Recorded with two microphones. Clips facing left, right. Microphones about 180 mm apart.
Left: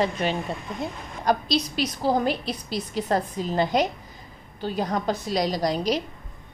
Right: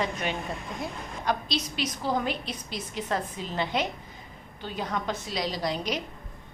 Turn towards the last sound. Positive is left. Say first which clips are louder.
# left 6 dB
turn(degrees=40)  # may be behind; listen again after turning